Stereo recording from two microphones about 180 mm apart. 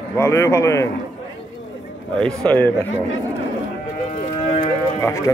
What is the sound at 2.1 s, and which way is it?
Speech, 5° left (ahead or behind).